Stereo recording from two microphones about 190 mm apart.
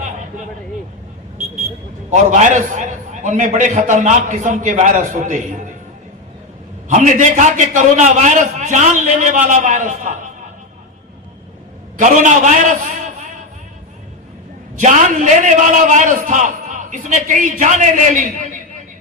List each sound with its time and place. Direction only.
2.0 s a man's voice: 40° right (ahead or behind)
6.8 s a man's voice: 40° right (ahead or behind)
11.9 s a man's voice: 40° right (ahead or behind)
14.8 s a man's voice: 40° right (ahead or behind)